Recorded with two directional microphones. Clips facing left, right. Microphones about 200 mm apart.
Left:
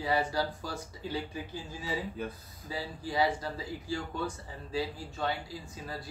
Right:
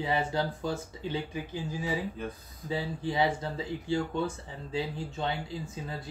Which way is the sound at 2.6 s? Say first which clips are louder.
Right 5 dB; 25° right (ahead or behind).